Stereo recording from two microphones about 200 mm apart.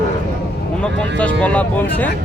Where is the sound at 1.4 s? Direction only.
5° left (ahead or behind).